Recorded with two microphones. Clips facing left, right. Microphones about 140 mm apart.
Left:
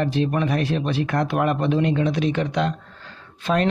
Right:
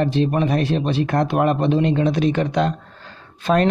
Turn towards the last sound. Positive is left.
turn(degrees=-45)  # may be behind; listen again after turning